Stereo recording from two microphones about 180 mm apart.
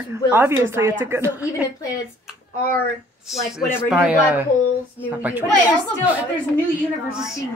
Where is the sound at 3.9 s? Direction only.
5° right (ahead or behind).